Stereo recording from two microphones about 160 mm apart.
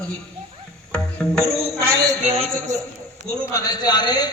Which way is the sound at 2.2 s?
40° right (ahead or behind).